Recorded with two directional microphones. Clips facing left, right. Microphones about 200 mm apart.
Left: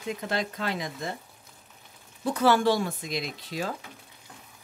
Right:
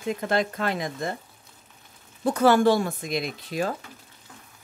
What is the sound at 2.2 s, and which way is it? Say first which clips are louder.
Speech: right 4 dB; 50° right (ahead or behind).